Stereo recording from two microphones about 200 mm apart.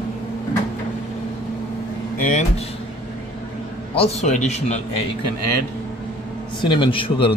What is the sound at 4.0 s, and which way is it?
Speech, 35° left (ahead or behind).